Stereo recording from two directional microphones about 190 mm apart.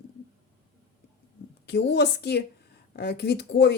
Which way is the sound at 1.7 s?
65° left (ahead or behind).